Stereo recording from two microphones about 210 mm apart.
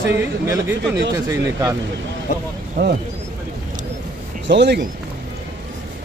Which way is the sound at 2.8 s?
50° right (ahead or behind).